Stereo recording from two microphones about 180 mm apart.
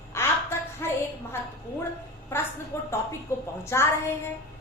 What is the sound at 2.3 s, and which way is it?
A woman's voice, 15° left (ahead or behind).